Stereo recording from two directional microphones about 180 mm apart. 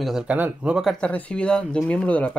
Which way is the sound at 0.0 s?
5° right (ahead or behind).